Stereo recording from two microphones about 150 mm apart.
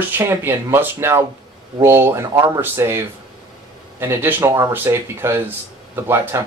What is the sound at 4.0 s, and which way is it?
Speech, 15° right (ahead or behind).